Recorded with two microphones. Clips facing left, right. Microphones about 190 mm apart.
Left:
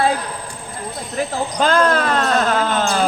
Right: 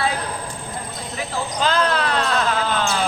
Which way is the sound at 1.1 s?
50° left (ahead or behind).